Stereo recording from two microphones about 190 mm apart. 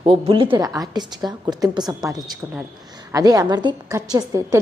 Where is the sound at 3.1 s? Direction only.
20° right (ahead or behind).